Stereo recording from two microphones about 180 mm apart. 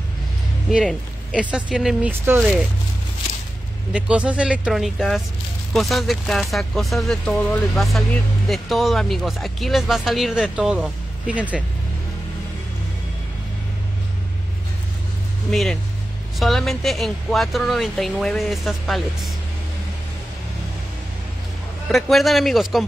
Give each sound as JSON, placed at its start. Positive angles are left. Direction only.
{"t": 0.7, "sound": "speech", "side_deg": -5}
{"t": 3.9, "sound": "speech", "side_deg": -5}
{"t": 15.5, "sound": "speech", "side_deg": 0}
{"t": 21.8, "sound": "speech", "side_deg": 0}